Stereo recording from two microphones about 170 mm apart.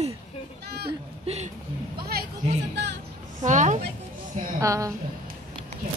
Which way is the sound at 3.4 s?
45° right (ahead or behind).